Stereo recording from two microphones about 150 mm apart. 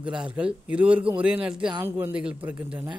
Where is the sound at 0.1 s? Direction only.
5° right (ahead or behind).